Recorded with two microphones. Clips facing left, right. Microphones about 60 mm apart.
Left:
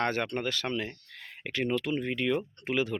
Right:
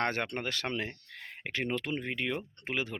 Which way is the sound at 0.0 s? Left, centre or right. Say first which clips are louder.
Left 3 dB; right.